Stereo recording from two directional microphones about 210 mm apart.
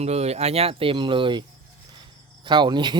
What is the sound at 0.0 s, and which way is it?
Speech, 30° right (ahead or behind).